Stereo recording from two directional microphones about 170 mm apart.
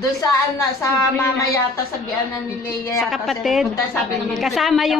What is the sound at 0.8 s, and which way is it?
Speech, 15° left (ahead or behind).